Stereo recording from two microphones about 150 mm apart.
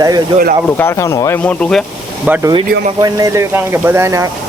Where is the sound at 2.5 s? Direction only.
25° right (ahead or behind).